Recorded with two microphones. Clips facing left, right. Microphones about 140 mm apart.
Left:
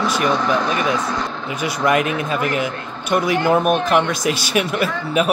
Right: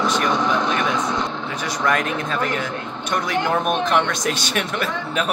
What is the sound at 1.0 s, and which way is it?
Speech, 20° right (ahead or behind).